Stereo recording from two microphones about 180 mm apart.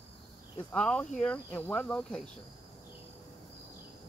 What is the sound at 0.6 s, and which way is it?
Speech, 5° left (ahead or behind).